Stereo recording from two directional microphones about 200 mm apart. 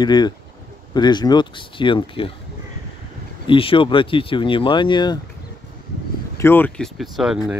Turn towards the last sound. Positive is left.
turn(degrees=-5)  # may be behind; listen again after turning